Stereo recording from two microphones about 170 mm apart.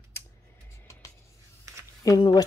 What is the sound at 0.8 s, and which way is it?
Music, 20° left (ahead or behind).